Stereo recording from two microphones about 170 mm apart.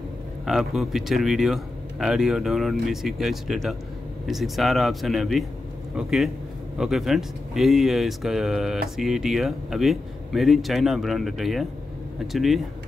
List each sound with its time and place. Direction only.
0.5 s speech: centre (ahead or behind)